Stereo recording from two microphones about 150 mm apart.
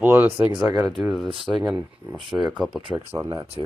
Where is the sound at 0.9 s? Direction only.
Centre (ahead or behind).